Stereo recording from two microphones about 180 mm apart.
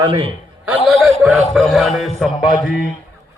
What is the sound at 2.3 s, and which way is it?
Speech, 30° left (ahead or behind).